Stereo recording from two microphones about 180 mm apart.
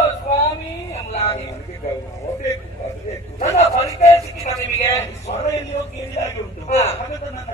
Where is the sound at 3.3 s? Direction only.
40° left (ahead or behind).